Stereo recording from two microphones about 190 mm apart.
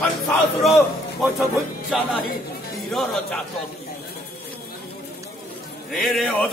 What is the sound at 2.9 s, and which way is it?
Speech, centre (ahead or behind).